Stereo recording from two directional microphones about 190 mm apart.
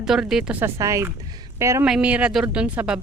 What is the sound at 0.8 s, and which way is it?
Speech, 15° right (ahead or behind).